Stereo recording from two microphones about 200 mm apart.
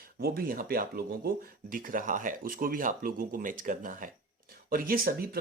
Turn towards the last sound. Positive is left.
turn(degrees=-50)  # may be behind; listen again after turning